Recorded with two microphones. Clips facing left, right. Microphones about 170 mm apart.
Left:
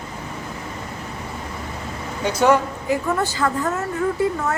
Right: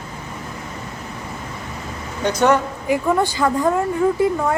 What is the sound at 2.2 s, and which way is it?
Speech, 5° left (ahead or behind).